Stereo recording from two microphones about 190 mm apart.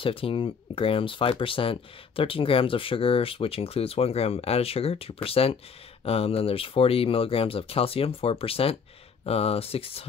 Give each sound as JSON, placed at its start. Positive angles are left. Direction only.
{"t": 0.0, "sound": "speech", "side_deg": 30}